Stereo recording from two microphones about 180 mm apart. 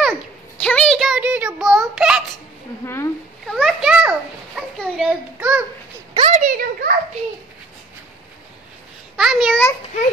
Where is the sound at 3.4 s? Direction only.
Centre (ahead or behind).